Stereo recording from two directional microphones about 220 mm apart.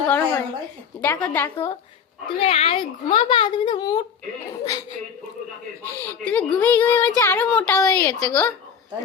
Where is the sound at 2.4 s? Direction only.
25° left (ahead or behind).